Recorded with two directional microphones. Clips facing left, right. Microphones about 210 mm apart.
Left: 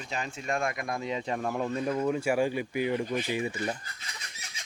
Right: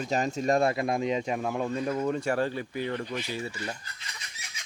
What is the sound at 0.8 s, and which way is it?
Speech, 20° right (ahead or behind).